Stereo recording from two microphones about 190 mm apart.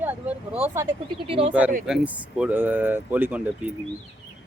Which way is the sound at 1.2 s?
30° right (ahead or behind).